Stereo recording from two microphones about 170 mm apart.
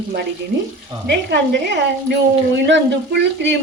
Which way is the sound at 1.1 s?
90° right.